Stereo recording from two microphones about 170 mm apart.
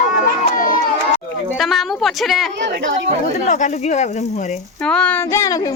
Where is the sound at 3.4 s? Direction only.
45° left (ahead or behind).